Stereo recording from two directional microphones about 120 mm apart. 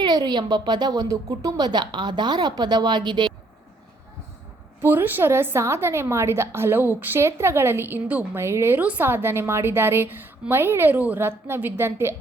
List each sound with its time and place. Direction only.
0.0 s a woman's voice: 35° right (ahead or behind)
4.8 s a woman's voice: 15° right (ahead or behind)